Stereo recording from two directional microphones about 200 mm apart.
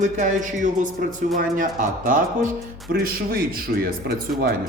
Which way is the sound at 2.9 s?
45° right (ahead or behind).